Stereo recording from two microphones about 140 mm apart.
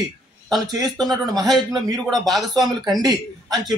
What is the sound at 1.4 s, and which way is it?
Speech, centre (ahead or behind).